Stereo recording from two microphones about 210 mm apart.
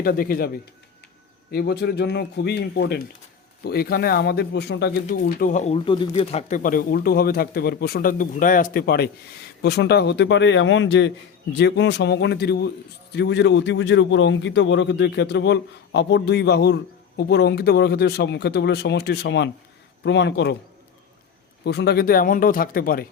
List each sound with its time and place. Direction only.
0.0 s a man's voice: 45° left (ahead or behind)
21.6 s speech: 50° left (ahead or behind)